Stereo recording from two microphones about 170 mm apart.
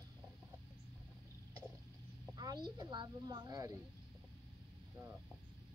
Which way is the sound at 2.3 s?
25° right (ahead or behind).